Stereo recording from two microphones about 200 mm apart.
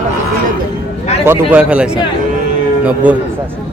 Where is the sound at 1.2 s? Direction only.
5° right (ahead or behind).